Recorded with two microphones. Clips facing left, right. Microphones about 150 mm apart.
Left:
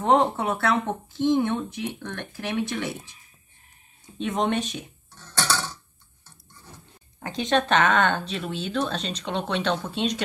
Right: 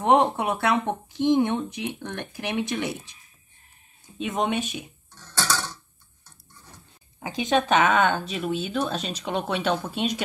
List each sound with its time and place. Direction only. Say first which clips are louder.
0.0 s speech: right 1 dB; 10° right (ahead or behind)
4.2 s speech: left 1 dB; 5° right (ahead or behind)
7.2 s speech: even; 10° right (ahead or behind)